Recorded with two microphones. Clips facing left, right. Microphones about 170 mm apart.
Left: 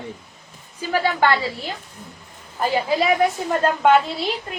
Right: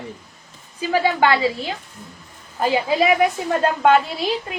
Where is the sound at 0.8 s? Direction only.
15° right (ahead or behind).